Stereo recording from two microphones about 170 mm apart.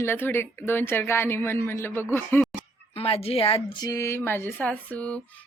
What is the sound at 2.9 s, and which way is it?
Speech, 35° left (ahead or behind).